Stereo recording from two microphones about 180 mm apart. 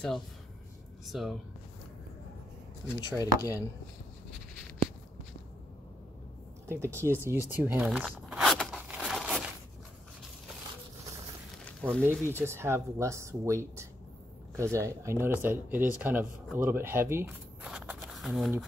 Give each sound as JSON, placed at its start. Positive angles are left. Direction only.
{"t": 1.0, "sound": "speech", "side_deg": 0}
{"t": 2.9, "sound": "chopping", "side_deg": 20}
{"t": 6.7, "sound": "zipper", "side_deg": -15}
{"t": 11.8, "sound": "speech", "side_deg": 5}
{"t": 12.3, "sound": "speech", "side_deg": -15}
{"t": 17.6, "sound": "a sound", "side_deg": -5}